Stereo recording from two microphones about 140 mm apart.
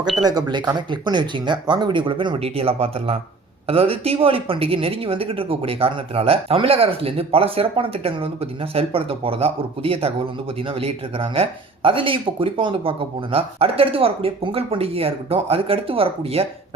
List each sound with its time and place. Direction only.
0.2 s a woman's voice: 30° right (ahead or behind)